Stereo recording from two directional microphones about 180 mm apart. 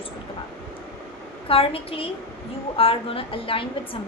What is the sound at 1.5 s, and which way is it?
A woman's voice, 30° left (ahead or behind).